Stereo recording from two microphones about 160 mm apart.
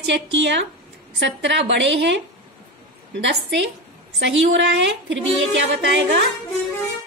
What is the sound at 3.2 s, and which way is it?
A woman's voice, 90° right.